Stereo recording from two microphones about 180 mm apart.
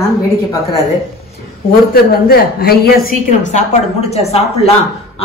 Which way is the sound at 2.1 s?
60° left (ahead or behind).